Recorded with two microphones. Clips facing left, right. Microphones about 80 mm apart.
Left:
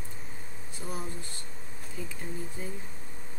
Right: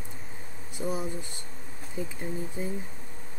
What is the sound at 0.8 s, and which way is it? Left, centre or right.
Speech, centre.